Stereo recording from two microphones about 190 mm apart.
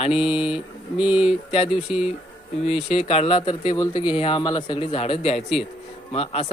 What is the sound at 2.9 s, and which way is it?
Speech, 30° left (ahead or behind).